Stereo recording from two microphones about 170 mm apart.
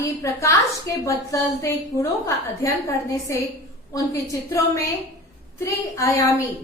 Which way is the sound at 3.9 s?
20° left (ahead or behind).